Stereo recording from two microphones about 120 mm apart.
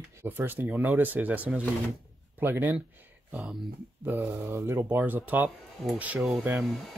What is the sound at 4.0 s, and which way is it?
Speech, 20° right (ahead or behind).